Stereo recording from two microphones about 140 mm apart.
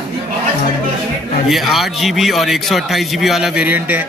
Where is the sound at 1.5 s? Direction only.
Centre (ahead or behind).